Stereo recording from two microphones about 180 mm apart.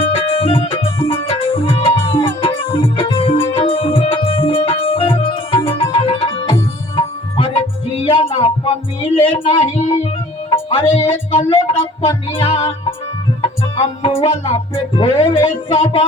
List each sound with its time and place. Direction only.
0.0 s music: 30° left (ahead or behind)
9.3 s speech: 30° left (ahead or behind)
10.5 s music: 30° left (ahead or behind)